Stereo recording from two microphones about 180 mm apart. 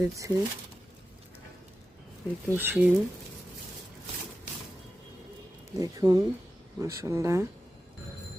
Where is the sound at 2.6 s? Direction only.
10° right (ahead or behind).